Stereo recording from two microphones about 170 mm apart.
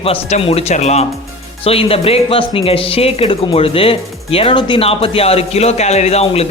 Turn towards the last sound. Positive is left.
turn(degrees=35)  # may be behind; listen again after turning